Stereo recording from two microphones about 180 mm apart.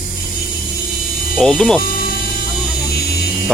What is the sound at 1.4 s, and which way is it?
Speech, 5° left (ahead or behind).